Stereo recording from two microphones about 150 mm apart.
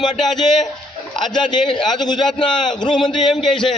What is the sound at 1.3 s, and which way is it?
A man's voice, 30° left (ahead or behind).